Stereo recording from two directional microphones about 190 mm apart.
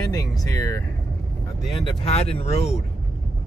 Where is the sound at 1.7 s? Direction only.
30° left (ahead or behind).